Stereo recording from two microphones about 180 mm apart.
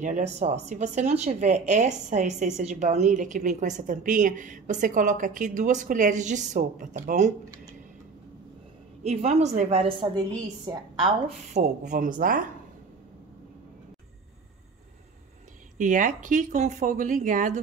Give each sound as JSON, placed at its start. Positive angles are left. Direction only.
{"t": 0.0, "sound": "a woman's voice", "side_deg": -40}
{"t": 9.0, "sound": "speech", "side_deg": -35}
{"t": 10.3, "sound": "a woman's voice", "side_deg": -20}
{"t": 11.2, "sound": "a woman's voice", "side_deg": -40}
{"t": 15.8, "sound": "a woman's voice", "side_deg": -45}